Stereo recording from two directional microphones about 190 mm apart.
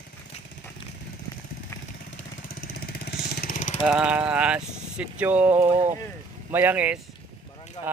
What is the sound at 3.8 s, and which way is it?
Speech, 5° right (ahead or behind).